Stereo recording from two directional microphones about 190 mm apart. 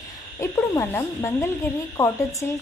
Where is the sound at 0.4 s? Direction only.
10° left (ahead or behind).